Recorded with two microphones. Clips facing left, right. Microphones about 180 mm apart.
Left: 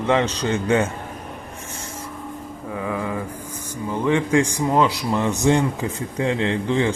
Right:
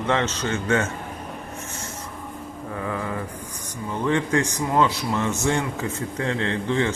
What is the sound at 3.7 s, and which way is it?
Speech, 10° left (ahead or behind).